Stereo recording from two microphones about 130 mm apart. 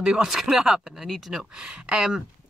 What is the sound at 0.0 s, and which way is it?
Speech, 5° right (ahead or behind).